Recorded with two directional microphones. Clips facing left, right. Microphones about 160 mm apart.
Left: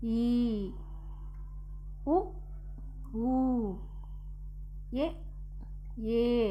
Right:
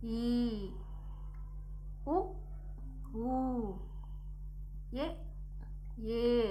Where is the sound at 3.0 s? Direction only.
20° left (ahead or behind).